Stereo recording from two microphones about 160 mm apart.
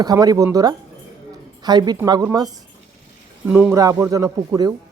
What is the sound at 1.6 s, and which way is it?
Speech, 25° right (ahead or behind).